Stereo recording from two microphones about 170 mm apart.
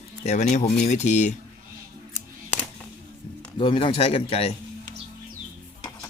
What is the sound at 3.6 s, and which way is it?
Speech, 30° left (ahead or behind).